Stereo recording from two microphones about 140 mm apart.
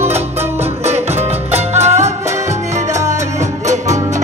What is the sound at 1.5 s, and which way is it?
Music, 50° right (ahead or behind).